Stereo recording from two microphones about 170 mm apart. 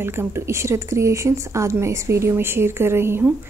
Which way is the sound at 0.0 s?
15° right (ahead or behind).